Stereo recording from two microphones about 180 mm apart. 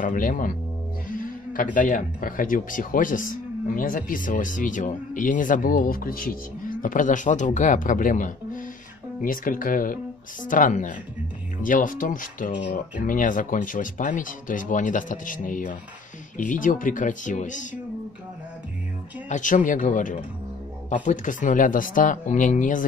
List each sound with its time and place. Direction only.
0.0 s speech: 45° left (ahead or behind)
19.2 s speech: 45° left (ahead or behind)